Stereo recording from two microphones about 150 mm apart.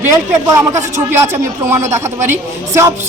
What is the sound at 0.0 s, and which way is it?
A man's voice, 20° right (ahead or behind).